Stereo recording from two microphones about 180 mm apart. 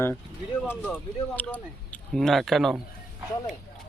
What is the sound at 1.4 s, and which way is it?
Speech, 10° left (ahead or behind).